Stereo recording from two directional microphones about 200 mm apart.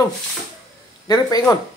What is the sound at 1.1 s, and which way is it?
Speech, 20° left (ahead or behind).